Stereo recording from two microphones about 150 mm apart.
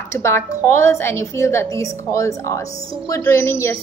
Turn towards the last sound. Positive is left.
turn(degrees=15)  # may be behind; listen again after turning